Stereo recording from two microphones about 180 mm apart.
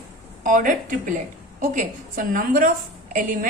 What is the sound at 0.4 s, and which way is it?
A woman's voice, 45° right (ahead or behind).